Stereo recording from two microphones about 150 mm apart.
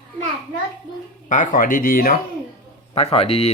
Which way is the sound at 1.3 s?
60° left (ahead or behind).